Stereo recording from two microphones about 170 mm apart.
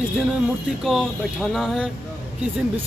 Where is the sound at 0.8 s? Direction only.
Centre (ahead or behind).